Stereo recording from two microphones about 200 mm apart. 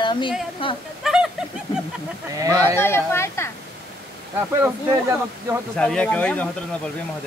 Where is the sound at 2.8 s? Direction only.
10° left (ahead or behind).